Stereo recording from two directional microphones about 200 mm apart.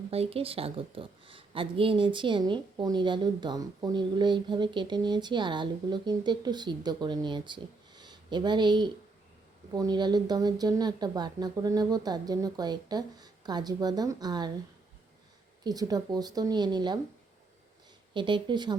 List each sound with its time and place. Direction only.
0.1 s a woman's voice: 30° right (ahead or behind)
15.6 s a woman's voice: 20° right (ahead or behind)
18.1 s a woman's voice: 25° right (ahead or behind)